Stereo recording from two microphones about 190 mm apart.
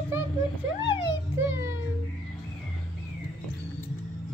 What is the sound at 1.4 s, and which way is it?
Speech, 15° right (ahead or behind).